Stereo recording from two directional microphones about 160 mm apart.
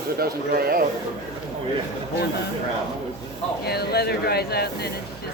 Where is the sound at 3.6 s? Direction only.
85° left.